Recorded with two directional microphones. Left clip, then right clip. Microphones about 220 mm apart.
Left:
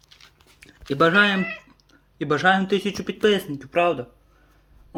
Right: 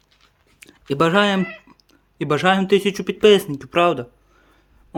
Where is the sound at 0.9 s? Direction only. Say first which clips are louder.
Right 1 dB; 35° right (ahead or behind).